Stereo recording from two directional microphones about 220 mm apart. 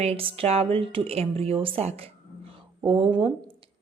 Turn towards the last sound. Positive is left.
turn(degrees=-25)  # may be behind; listen again after turning